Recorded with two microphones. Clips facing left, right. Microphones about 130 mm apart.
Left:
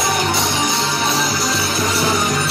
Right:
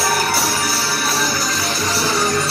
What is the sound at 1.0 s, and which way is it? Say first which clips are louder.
Music: left 2 dB; 5° right (ahead or behind).